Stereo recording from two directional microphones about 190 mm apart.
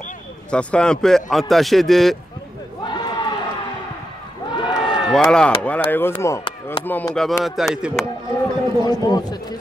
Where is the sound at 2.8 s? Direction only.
20° left (ahead or behind).